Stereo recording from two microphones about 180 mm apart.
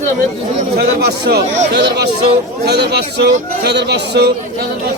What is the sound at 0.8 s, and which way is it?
A man's voice, 65° right (ahead or behind).